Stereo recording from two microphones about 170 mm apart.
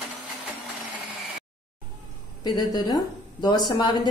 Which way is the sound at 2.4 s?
25° left (ahead or behind).